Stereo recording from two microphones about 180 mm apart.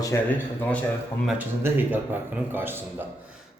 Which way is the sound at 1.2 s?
5° right (ahead or behind).